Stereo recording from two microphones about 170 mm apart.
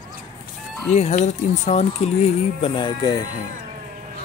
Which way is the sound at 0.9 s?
40° left (ahead or behind).